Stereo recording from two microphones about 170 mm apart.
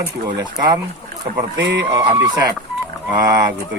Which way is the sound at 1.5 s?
90° right.